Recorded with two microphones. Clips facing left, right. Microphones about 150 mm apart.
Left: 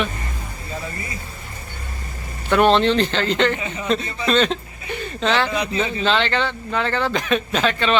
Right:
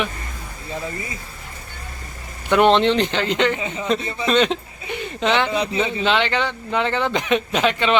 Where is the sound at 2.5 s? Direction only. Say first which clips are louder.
Even; 20° right (ahead or behind).